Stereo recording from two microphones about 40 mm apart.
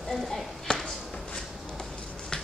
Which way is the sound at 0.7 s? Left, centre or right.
Centre.